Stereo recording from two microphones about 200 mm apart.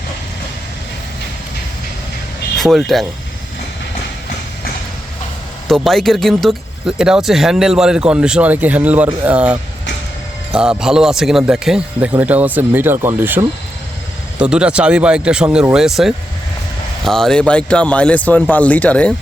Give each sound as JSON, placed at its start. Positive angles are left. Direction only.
{"t": 2.6, "sound": "speech", "side_deg": 0}
{"t": 5.6, "sound": "speech", "side_deg": 0}